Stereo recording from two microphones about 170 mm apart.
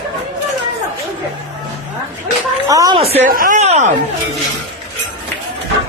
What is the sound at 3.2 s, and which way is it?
Speech, 55° right (ahead or behind).